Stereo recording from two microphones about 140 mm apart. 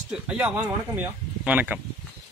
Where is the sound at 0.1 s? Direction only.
10° right (ahead or behind).